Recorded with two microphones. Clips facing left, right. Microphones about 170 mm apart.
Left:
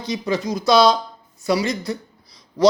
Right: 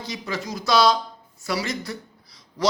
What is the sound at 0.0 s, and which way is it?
A man's voice, 20° left (ahead or behind).